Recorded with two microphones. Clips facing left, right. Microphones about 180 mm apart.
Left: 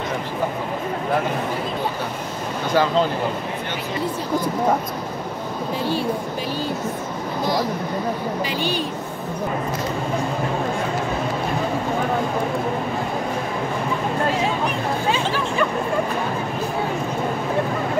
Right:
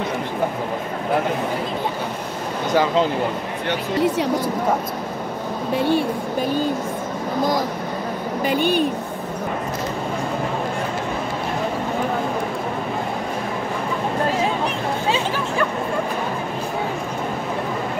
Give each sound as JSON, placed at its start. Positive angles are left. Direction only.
{"t": 5.8, "sound": "speech", "side_deg": -60}
{"t": 8.5, "sound": "speech", "side_deg": -55}